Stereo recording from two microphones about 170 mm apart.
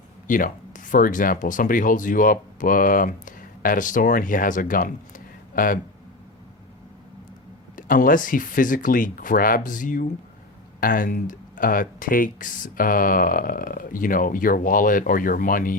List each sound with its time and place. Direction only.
0.3 s speech: 50° left (ahead or behind)
7.8 s speech: 50° left (ahead or behind)